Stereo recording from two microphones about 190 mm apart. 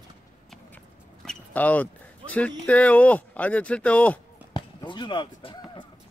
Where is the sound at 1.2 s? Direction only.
10° left (ahead or behind).